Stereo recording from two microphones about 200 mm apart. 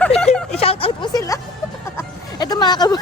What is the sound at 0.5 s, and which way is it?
A woman's voice, 30° left (ahead or behind).